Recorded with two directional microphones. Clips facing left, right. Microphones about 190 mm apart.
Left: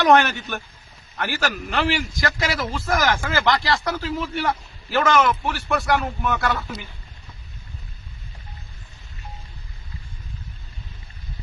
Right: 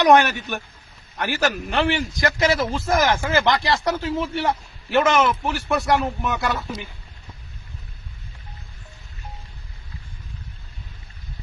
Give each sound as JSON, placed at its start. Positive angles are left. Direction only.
{"t": 0.0, "sound": "a man's voice", "side_deg": -15}